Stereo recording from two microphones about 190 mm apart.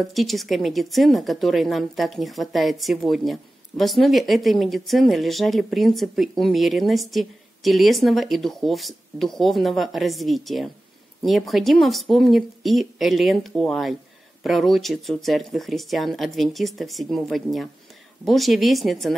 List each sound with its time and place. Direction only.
0.0 s speech: centre (ahead or behind)